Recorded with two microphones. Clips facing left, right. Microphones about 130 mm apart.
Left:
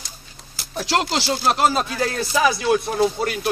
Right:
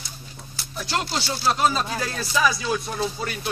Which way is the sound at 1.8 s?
55° left (ahead or behind).